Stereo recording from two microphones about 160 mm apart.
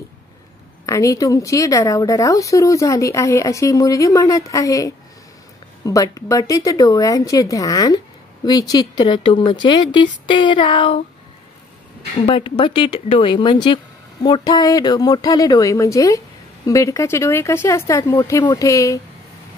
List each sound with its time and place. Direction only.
0.8 s speech: 20° left (ahead or behind)
12.3 s speech: 35° left (ahead or behind)